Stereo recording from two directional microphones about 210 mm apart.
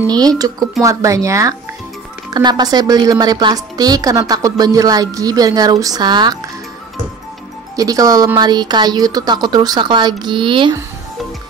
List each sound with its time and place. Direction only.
0.0 s a woman's voice: 20° right (ahead or behind)
7.7 s speech: 15° right (ahead or behind)